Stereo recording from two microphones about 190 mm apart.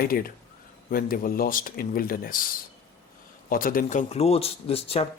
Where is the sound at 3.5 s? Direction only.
50° left (ahead or behind).